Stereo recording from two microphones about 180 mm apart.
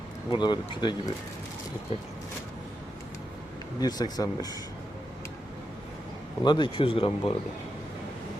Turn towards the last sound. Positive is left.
turn(degrees=30)  # may be behind; listen again after turning